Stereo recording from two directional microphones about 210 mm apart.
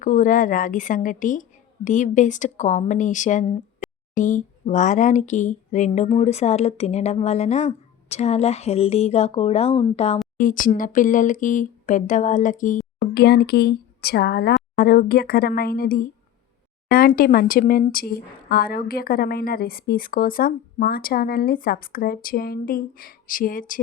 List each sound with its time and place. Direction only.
0.0 s a woman's voice: 40° left (ahead or behind)
10.3 s a woman's voice: 40° left (ahead or behind)
13.1 s speech: 50° left (ahead or behind)